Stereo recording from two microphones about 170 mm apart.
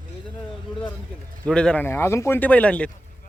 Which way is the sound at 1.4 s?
5° left (ahead or behind).